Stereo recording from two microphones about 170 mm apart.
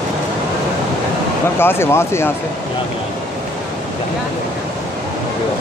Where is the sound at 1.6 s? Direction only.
15° left (ahead or behind).